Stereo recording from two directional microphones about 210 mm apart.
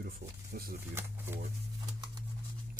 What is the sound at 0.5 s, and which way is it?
Speech, 45° right (ahead or behind).